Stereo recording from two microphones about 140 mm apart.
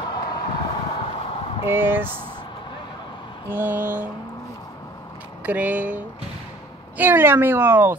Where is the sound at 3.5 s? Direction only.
15° right (ahead or behind).